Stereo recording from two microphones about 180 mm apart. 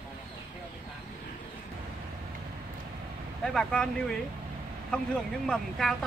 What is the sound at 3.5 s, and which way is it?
Speech, 5° left (ahead or behind).